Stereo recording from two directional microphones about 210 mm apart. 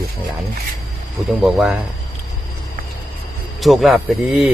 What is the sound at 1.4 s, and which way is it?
Speech, centre (ahead or behind).